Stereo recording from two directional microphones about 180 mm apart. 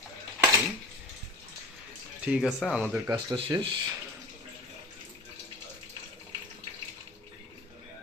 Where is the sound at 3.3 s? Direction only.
30° right (ahead or behind).